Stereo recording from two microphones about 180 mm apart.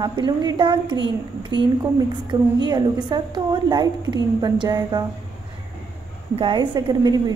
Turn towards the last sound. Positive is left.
turn(degrees=-20)  # may be behind; listen again after turning